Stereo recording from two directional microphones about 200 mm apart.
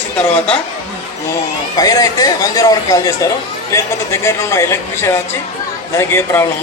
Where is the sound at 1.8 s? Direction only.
20° left (ahead or behind).